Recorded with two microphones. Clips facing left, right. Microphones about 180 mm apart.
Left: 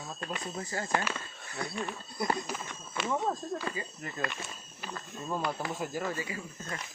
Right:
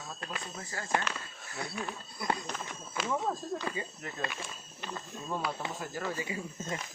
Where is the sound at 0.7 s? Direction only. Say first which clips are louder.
Left 5 dB; 25° left (ahead or behind).